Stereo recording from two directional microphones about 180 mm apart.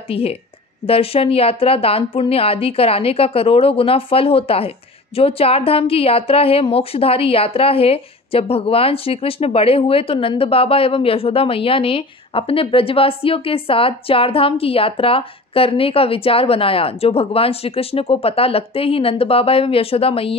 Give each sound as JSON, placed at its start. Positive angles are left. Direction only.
{"t": 0.1, "sound": "a woman's voice", "side_deg": 35}